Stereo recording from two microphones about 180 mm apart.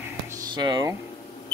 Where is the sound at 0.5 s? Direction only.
20° right (ahead or behind).